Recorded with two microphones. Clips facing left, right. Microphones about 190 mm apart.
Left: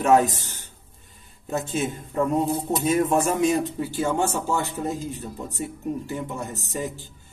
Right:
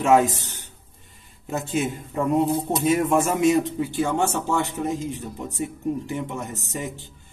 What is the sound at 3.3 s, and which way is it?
Speech, 20° right (ahead or behind).